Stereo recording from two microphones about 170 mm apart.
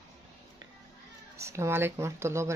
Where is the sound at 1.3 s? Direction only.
15° right (ahead or behind).